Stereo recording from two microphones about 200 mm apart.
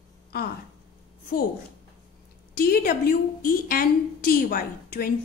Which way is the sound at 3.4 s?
45° left (ahead or behind).